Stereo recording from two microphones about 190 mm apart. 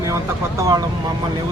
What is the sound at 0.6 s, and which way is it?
Speech, 20° right (ahead or behind).